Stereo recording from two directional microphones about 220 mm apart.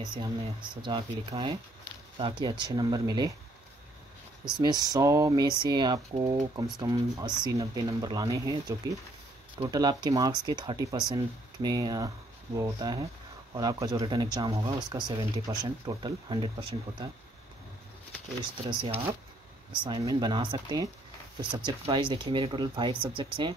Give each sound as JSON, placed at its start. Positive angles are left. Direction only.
{"t": 0.1, "sound": "speech", "side_deg": -20}
{"t": 4.6, "sound": "speech", "side_deg": -15}
{"t": 18.4, "sound": "speech", "side_deg": -25}